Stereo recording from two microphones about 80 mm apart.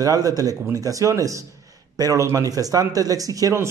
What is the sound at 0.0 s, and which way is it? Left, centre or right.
Speech, right.